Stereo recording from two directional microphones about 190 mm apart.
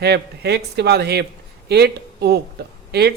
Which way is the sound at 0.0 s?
60° right (ahead or behind).